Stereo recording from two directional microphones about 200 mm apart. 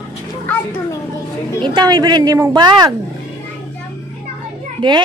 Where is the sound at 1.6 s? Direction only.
20° right (ahead or behind).